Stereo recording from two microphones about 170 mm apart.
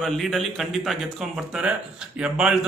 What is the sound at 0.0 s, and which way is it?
Speech, centre (ahead or behind).